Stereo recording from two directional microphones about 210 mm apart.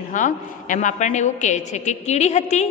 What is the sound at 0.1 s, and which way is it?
A woman's voice, 35° left (ahead or behind).